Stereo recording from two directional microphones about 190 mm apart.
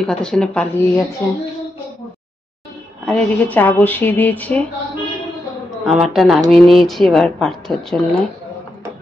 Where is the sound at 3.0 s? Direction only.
5° left (ahead or behind).